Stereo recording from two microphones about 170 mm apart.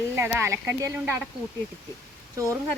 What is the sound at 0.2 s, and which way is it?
Speech, 15° right (ahead or behind).